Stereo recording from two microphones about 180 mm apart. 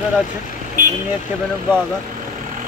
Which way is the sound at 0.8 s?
50° right (ahead or behind).